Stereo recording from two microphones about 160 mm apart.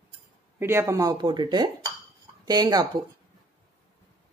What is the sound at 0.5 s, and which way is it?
Speech, 15° right (ahead or behind).